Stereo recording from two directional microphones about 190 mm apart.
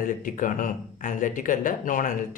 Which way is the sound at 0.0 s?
45° left (ahead or behind).